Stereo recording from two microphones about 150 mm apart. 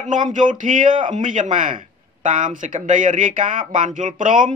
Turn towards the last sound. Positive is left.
turn(degrees=-60)  # may be behind; listen again after turning